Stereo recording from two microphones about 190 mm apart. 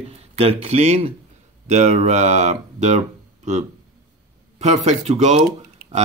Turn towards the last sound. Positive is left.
turn(degrees=-35)  # may be behind; listen again after turning